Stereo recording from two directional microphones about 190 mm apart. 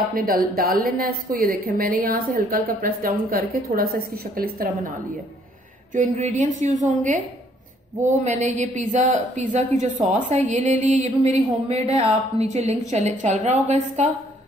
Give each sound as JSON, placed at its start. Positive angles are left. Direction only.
{"t": 0.1, "sound": "a woman's voice", "side_deg": -50}
{"t": 5.9, "sound": "speech", "side_deg": -40}